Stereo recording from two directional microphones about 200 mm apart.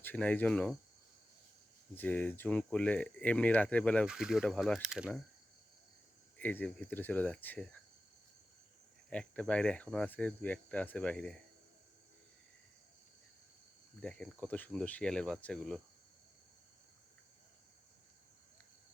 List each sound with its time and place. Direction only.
0.0 s speech: 10° left (ahead or behind)
2.0 s speech: 5° left (ahead or behind)
6.3 s speech: 10° left (ahead or behind)
9.0 s speech: 5° left (ahead or behind)
14.0 s speech: 5° left (ahead or behind)